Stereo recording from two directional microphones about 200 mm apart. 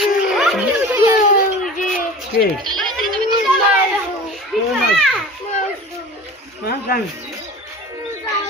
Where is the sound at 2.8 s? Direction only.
Centre (ahead or behind).